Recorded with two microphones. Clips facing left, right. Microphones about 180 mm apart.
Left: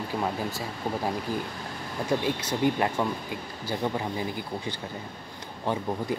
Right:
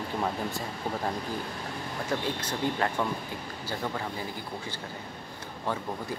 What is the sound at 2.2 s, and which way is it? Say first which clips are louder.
Speech: left 5 dB; 10° left (ahead or behind).